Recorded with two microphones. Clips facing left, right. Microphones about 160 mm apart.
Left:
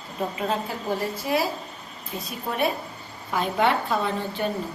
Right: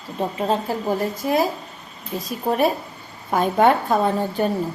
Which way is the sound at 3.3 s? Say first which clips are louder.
Right 6 dB; 45° right (ahead or behind).